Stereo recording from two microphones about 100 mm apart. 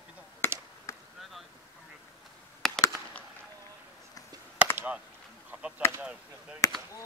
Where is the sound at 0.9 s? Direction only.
35° left (ahead or behind).